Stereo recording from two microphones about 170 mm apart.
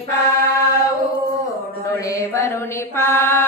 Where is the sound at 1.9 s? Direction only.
20° left (ahead or behind).